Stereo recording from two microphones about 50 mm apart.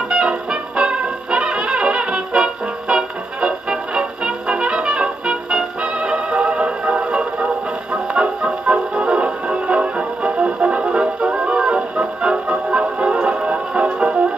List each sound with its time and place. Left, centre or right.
0.1 s music: centre
10.9 s music: centre